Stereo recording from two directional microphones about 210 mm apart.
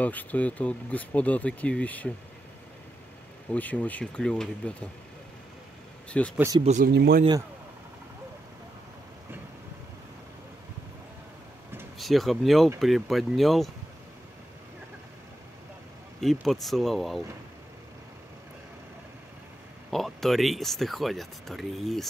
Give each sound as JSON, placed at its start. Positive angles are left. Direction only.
{"t": 0.0, "sound": "speech", "side_deg": 5}
{"t": 3.5, "sound": "speech", "side_deg": 5}
{"t": 6.0, "sound": "speech", "side_deg": 5}
{"t": 6.3, "sound": "speech", "side_deg": -15}
{"t": 6.6, "sound": "speech", "side_deg": -35}
{"t": 6.9, "sound": "a man's voice", "side_deg": -50}
{"t": 12.0, "sound": "speech", "side_deg": 0}
{"t": 16.2, "sound": "speech", "side_deg": 0}
{"t": 19.9, "sound": "speech", "side_deg": 0}